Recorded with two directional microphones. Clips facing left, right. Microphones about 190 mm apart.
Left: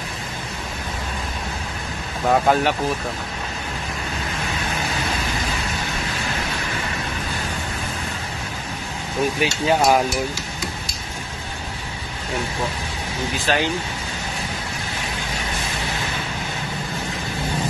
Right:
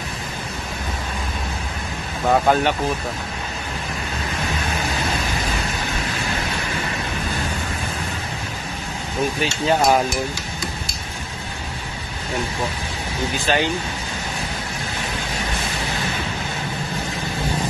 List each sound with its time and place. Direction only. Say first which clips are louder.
2.2 s hammer: even; centre (ahead or behind)
9.4 s hammer: even; 5° left (ahead or behind)
13.5 s hammer: right 1 dB; centre (ahead or behind)